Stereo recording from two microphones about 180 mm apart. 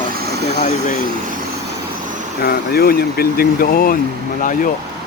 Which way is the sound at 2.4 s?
60° left (ahead or behind).